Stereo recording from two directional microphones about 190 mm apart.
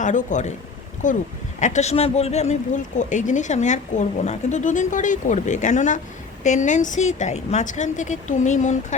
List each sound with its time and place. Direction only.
0.0 s speech: 40° left (ahead or behind)